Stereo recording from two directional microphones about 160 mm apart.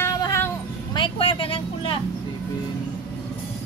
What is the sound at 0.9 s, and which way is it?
Speech, 30° left (ahead or behind).